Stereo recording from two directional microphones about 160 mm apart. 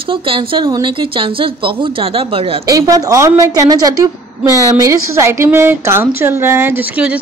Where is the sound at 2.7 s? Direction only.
20° right (ahead or behind).